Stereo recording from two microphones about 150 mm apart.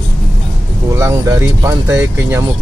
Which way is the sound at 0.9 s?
20° right (ahead or behind).